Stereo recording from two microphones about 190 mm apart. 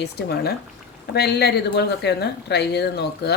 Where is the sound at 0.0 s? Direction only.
60° left (ahead or behind).